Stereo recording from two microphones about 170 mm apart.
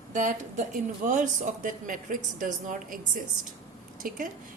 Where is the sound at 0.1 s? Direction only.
50° right (ahead or behind).